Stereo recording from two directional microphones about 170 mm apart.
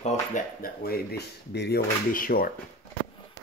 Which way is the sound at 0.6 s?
65° left (ahead or behind).